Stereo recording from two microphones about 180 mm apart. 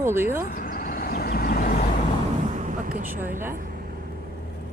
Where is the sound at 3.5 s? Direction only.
50° right (ahead or behind).